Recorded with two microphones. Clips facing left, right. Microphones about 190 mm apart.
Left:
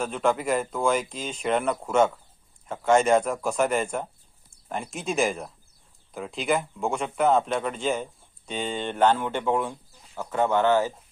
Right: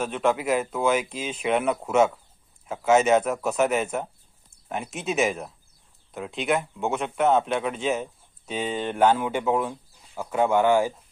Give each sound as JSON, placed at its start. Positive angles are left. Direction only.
{"t": 0.0, "sound": "speech", "side_deg": -5}